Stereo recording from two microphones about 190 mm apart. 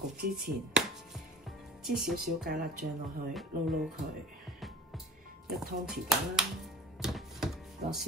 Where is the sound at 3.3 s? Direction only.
Centre (ahead or behind).